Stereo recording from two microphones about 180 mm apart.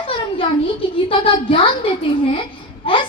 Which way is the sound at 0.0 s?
30° left (ahead or behind).